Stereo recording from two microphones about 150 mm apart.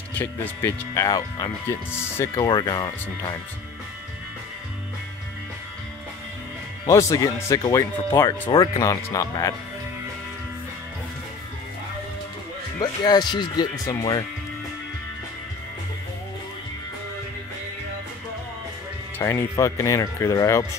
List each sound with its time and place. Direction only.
0.1 s speech: 10° left (ahead or behind)
1.0 s speech: 25° left (ahead or behind)
1.9 s speech: 15° left (ahead or behind)
2.4 s speech: 30° left (ahead or behind)
6.9 s speech: 20° left (ahead or behind)
12.7 s speech: 25° left (ahead or behind)
19.1 s speech: 20° left (ahead or behind)